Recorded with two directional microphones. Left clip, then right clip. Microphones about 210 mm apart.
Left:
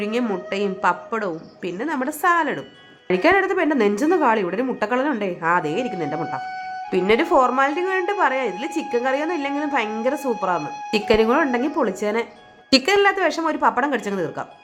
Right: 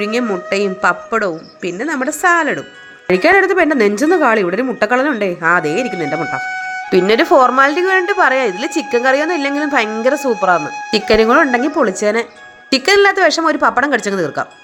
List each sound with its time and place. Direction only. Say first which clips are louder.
0.0 s a woman's voice: right 6 dB; 20° right (ahead or behind)
6.5 s music: right 8 dB; 50° right (ahead or behind)
6.9 s a woman's voice: right 7 dB; 20° right (ahead or behind)